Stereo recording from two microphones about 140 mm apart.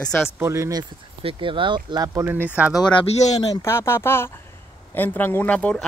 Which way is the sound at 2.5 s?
10° right (ahead or behind).